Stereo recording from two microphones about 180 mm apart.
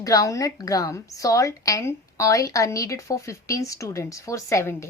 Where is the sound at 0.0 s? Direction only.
20° left (ahead or behind).